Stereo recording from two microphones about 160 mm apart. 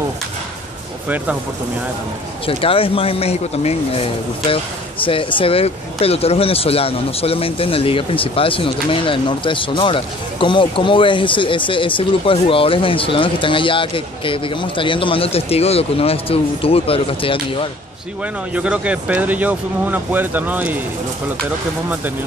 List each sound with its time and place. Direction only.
1.0 s speech: 10° right (ahead or behind)
2.4 s speech: 35° left (ahead or behind)
18.2 s speech: 10° right (ahead or behind)